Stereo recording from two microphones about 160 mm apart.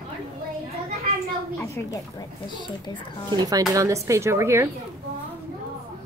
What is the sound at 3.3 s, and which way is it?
Speech, 25° right (ahead or behind).